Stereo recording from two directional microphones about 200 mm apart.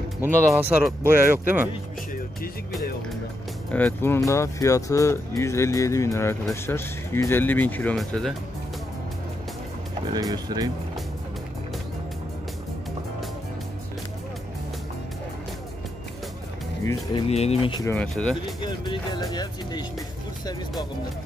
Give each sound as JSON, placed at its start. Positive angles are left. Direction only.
{"t": 0.2, "sound": "speech", "side_deg": -10}
{"t": 3.7, "sound": "speech", "side_deg": 10}
{"t": 10.1, "sound": "speech", "side_deg": -20}
{"t": 17.1, "sound": "speech", "side_deg": 30}
{"t": 17.8, "sound": "speech", "side_deg": 5}
{"t": 18.6, "sound": "speech", "side_deg": 25}